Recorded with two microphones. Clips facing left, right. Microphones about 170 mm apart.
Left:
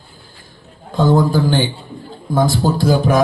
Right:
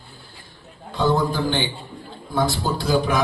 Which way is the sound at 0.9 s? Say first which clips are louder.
Left 6 dB; 45° left (ahead or behind).